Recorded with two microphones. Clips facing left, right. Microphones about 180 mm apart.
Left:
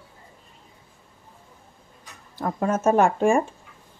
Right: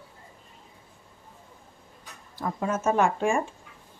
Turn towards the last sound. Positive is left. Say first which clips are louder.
# left 5 dB
turn(degrees=45)  # may be behind; listen again after turning